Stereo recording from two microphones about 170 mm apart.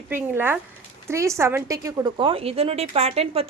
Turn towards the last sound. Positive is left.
turn(degrees=-35)  # may be behind; listen again after turning